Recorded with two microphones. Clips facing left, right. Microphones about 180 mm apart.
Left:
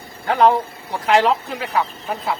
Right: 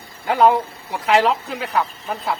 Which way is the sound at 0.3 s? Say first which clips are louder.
Even; 5° right (ahead or behind).